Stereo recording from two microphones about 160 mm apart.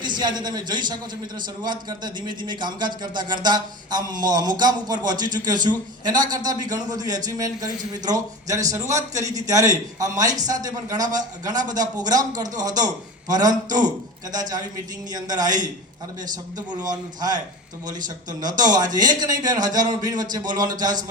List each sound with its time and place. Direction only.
0.0 s a man's voice: 30° right (ahead or behind)
15.1 s a man's voice: 25° right (ahead or behind)